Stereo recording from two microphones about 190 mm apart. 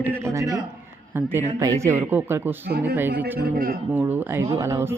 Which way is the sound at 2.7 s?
60° right (ahead or behind).